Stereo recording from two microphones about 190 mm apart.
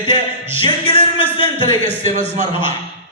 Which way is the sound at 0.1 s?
30° left (ahead or behind).